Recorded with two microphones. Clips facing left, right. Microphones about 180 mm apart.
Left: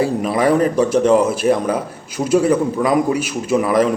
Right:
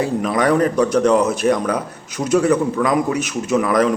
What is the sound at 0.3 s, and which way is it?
Speech, 30° left (ahead or behind).